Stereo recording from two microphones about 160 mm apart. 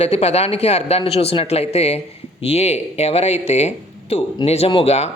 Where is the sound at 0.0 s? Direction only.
40° left (ahead or behind).